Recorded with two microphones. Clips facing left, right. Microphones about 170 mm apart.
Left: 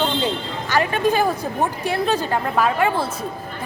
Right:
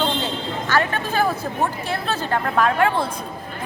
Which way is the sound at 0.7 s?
15° left (ahead or behind).